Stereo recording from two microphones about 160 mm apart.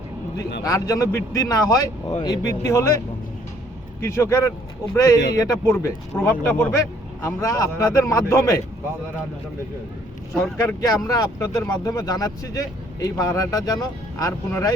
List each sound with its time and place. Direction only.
0.6 s speech: 20° left (ahead or behind)
4.0 s speech: 20° left (ahead or behind)
10.4 s speech: 20° left (ahead or behind)